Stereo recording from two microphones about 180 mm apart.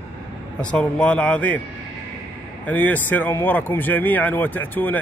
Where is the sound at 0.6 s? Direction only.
5° left (ahead or behind).